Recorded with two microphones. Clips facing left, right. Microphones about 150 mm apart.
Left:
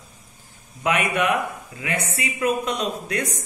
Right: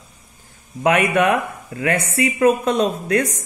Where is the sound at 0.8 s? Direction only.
45° right (ahead or behind).